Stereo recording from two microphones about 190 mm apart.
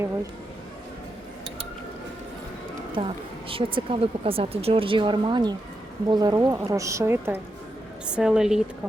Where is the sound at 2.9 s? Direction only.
30° right (ahead or behind); by 8.6 s 5° right (ahead or behind).